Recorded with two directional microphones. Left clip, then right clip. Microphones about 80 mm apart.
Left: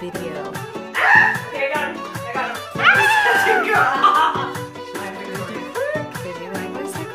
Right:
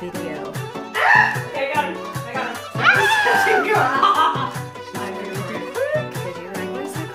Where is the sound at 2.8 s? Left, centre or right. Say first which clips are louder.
Left 1 dB; centre.